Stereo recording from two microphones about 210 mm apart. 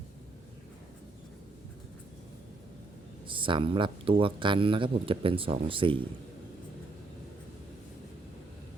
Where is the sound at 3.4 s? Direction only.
25° right (ahead or behind).